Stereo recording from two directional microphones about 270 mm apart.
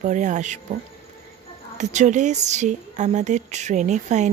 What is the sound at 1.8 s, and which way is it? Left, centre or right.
Speech, right.